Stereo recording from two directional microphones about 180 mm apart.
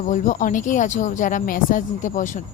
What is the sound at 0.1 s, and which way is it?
Speech, 45° left (ahead or behind).